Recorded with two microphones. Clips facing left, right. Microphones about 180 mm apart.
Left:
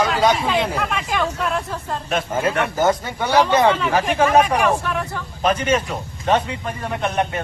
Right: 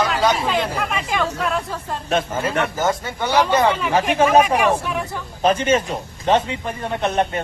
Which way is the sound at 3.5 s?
10° right (ahead or behind).